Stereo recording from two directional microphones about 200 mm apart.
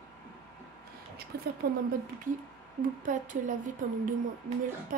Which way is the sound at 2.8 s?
40° right (ahead or behind).